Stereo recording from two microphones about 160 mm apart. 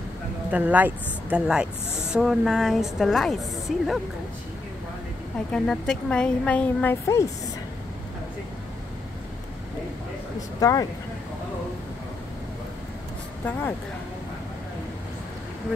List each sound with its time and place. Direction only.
0.5 s speech: 10° right (ahead or behind)
5.5 s a woman's voice: 5° left (ahead or behind)
10.6 s speech: 20° left (ahead or behind)